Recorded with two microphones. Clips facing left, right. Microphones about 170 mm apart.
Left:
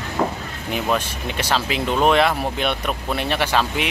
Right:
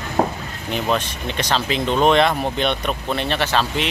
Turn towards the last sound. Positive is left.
turn(degrees=10)  # may be behind; listen again after turning